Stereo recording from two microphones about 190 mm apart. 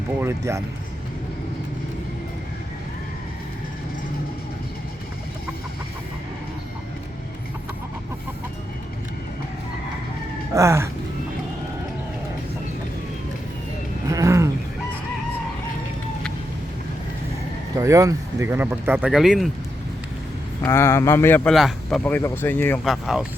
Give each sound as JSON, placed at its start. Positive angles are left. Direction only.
{"t": 0.2, "sound": "speech", "side_deg": -15}
{"t": 10.5, "sound": "speech", "side_deg": -15}
{"t": 14.1, "sound": "roaring cats", "side_deg": -15}
{"t": 17.7, "sound": "speech", "side_deg": -15}
{"t": 20.6, "sound": "speech", "side_deg": 15}
{"t": 22.9, "sound": "speech", "side_deg": 0}